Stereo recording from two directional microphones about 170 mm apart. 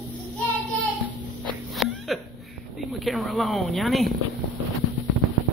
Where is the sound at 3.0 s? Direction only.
Centre (ahead or behind).